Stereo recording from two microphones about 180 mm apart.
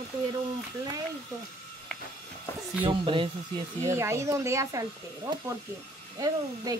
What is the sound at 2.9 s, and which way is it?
Speech, 30° right (ahead or behind).